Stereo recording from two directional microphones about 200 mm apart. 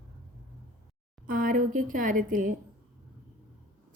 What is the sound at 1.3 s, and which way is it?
A woman's voice, 45° right (ahead or behind).